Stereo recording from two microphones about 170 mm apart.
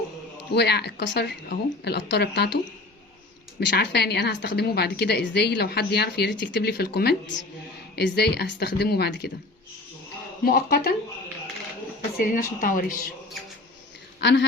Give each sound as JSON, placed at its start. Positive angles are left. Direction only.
{"t": 0.5, "sound": "a woman's voice", "side_deg": 75}
{"t": 3.6, "sound": "a woman's voice", "side_deg": 90}
{"t": 10.4, "sound": "a woman's voice", "side_deg": 65}
{"t": 12.1, "sound": "a woman's voice", "side_deg": 60}
{"t": 14.2, "sound": "speech", "side_deg": 90}